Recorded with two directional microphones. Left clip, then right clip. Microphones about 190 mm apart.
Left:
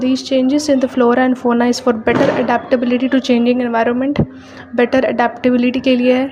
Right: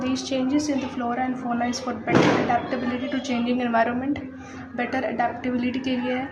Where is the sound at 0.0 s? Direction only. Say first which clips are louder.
Left 10 dB; 30° left (ahead or behind).